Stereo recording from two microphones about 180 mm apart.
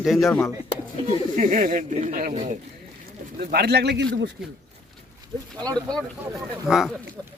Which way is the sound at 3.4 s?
60° right (ahead or behind).